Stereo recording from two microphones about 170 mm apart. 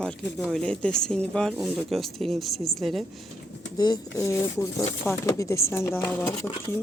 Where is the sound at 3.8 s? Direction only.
20° left (ahead or behind).